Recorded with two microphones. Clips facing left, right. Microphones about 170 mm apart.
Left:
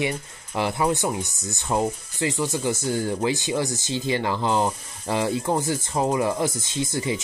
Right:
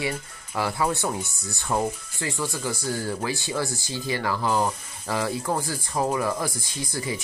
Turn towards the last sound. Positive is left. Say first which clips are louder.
# left 5 dB
turn(degrees=25)  # may be behind; listen again after turning